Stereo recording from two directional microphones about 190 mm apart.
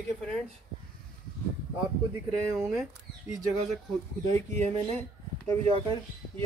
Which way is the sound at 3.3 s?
15° right (ahead or behind).